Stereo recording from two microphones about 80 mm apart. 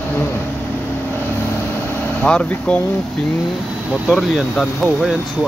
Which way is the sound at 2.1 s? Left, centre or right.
Centre.